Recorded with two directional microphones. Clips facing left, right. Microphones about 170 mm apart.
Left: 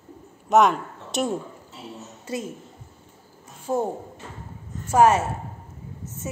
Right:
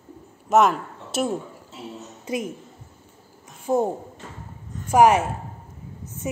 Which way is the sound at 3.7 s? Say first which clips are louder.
Right 3 dB; 15° right (ahead or behind).